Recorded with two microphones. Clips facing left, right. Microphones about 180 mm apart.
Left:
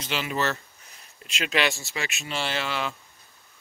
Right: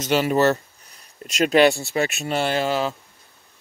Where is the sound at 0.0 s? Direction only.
45° right (ahead or behind).